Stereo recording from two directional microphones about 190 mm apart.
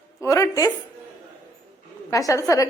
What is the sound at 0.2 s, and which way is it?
Speech, 15° left (ahead or behind).